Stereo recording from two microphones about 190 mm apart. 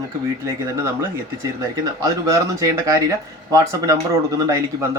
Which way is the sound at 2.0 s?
15° right (ahead or behind).